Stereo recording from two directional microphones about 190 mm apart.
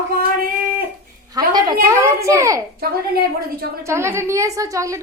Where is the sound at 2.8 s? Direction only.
50° right (ahead or behind).